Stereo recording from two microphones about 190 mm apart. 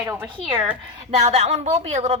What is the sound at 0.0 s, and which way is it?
Speech, 10° right (ahead or behind).